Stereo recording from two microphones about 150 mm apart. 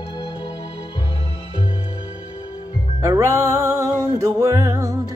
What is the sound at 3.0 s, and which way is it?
Music, 20° right (ahead or behind).